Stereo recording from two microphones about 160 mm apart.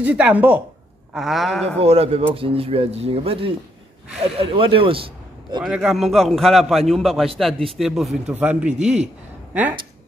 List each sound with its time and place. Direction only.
0.0 s a man's voice: 10° right (ahead or behind)
1.8 s speech: 40° right (ahead or behind)
5.6 s a man's voice: 5° right (ahead or behind)
9.0 s a sound: 10° right (ahead or behind)